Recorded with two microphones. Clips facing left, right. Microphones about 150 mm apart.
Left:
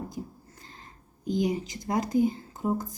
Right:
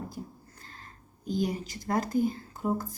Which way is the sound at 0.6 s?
15° left (ahead or behind).